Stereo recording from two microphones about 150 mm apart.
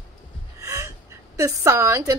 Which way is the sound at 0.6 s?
20° right (ahead or behind).